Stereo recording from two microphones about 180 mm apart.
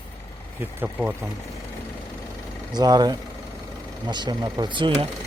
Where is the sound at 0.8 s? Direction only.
5° right (ahead or behind).